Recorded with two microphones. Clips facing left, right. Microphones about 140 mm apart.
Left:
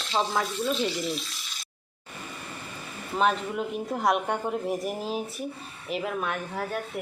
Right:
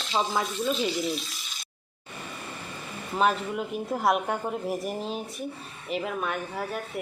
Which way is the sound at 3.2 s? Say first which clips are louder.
Even; centre (ahead or behind).